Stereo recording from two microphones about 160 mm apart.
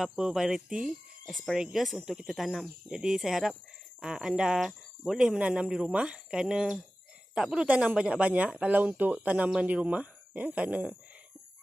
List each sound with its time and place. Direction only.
0.0 s speech: 5° right (ahead or behind)